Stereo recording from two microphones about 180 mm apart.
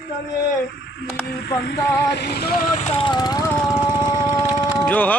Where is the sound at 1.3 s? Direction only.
70° left (ahead or behind); by 3.5 s 20° left (ahead or behind).